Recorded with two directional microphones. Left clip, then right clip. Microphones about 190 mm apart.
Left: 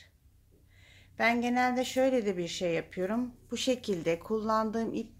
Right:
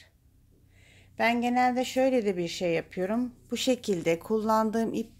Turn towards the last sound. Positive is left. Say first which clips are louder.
# right 4 dB
turn(degrees=-40)  # may be behind; listen again after turning